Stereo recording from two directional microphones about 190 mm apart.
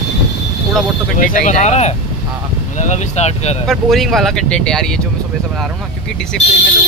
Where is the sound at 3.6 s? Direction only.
Centre (ahead or behind).